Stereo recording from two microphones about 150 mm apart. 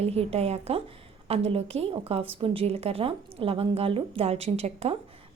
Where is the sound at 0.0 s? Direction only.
45° right (ahead or behind).